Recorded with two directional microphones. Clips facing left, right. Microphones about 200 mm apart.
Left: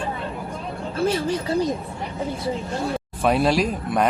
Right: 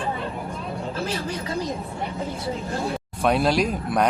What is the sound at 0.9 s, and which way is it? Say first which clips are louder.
Speech: left 10 dB; 30° left (ahead or behind).